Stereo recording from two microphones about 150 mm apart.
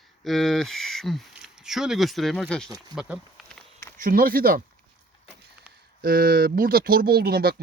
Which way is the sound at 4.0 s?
70° right (ahead or behind).